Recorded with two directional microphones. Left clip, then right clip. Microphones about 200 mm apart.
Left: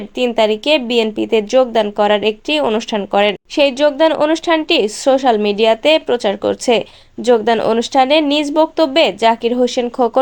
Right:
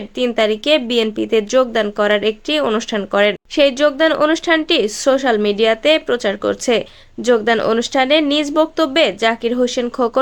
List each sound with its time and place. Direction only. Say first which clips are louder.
0.2 s a woman's voice: left 2 dB; 5° left (ahead or behind)